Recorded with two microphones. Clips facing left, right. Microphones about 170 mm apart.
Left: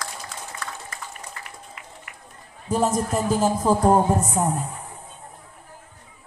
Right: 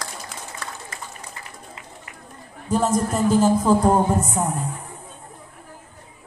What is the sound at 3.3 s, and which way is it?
Speech, 5° left (ahead or behind).